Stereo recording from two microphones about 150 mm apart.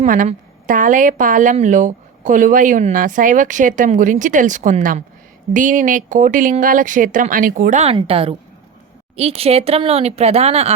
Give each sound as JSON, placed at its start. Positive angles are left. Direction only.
{"t": 0.0, "sound": "a woman's voice", "side_deg": -55}
{"t": 7.9, "sound": "a woman's voice", "side_deg": -40}